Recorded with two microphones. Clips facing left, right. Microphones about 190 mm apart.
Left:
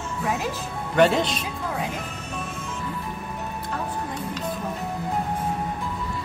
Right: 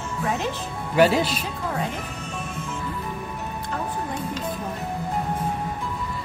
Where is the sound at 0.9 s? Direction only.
5° right (ahead or behind).